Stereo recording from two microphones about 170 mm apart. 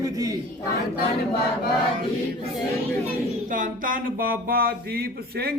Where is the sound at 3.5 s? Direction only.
50° right (ahead or behind).